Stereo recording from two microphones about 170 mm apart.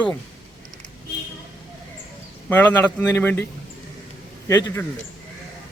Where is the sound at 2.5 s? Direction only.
10° left (ahead or behind).